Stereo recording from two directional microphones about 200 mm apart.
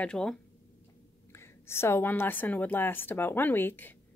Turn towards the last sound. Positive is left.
turn(degrees=10)  # may be behind; listen again after turning